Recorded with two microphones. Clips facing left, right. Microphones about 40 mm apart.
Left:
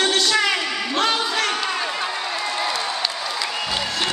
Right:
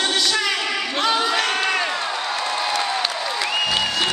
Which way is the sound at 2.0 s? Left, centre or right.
Centre.